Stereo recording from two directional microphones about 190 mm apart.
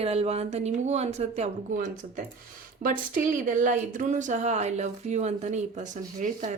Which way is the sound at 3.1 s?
45° right (ahead or behind).